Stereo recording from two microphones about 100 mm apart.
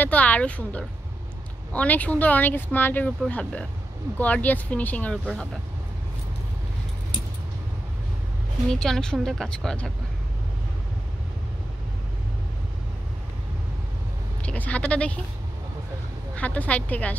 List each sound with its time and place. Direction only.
0.0 s speech: 15° left (ahead or behind)
8.7 s speech: 5° left (ahead or behind)
14.4 s speech: 15° left (ahead or behind)
16.3 s speech: 15° left (ahead or behind)